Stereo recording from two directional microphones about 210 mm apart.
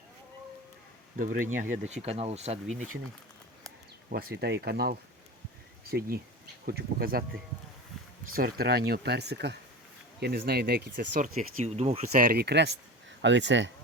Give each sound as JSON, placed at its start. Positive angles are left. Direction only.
{"t": 1.2, "sound": "speech", "side_deg": -40}
{"t": 1.9, "sound": "speech", "side_deg": -30}
{"t": 4.1, "sound": "speech", "side_deg": -50}
{"t": 8.3, "sound": "speech", "side_deg": -45}
{"t": 12.1, "sound": "speech", "side_deg": -45}